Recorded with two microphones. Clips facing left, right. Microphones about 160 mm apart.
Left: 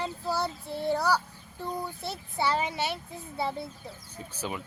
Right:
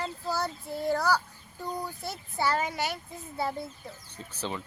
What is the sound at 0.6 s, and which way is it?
Speech, 30° left (ahead or behind).